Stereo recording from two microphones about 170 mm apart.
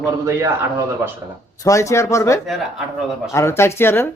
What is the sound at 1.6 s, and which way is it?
A man's voice, 20° left (ahead or behind).